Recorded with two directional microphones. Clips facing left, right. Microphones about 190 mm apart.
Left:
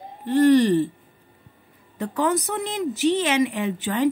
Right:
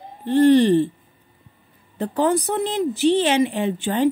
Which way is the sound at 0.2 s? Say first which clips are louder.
Right 2 dB; 30° right (ahead or behind).